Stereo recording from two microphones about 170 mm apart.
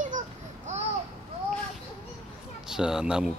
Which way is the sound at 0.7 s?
45° right (ahead or behind).